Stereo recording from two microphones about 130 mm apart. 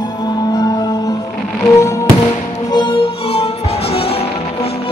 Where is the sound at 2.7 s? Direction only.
40° left (ahead or behind).